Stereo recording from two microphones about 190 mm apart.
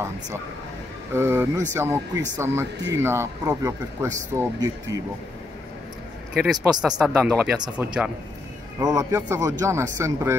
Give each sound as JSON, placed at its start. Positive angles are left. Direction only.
{"t": 1.1, "sound": "speech", "side_deg": -10}
{"t": 6.3, "sound": "speech", "side_deg": 0}